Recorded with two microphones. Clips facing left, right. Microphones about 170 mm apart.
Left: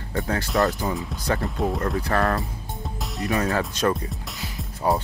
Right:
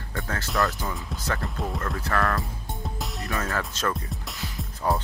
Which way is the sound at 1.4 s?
Centre (ahead or behind).